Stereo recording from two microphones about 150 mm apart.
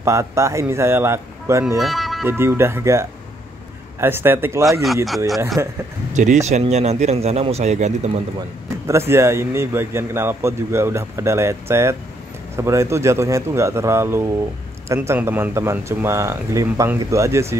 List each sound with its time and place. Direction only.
0.0 s speech: 20° right (ahead or behind)
1.8 s music: centre (ahead or behind)
2.2 s a man's voice: 15° right (ahead or behind)
6.1 s speech: 50° right (ahead or behind)
8.8 s a man's voice: 15° right (ahead or behind)